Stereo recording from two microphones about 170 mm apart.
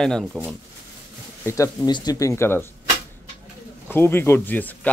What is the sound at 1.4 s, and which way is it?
Speech, 20° left (ahead or behind).